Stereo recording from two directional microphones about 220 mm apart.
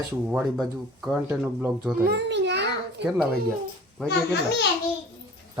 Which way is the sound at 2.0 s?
50° right (ahead or behind).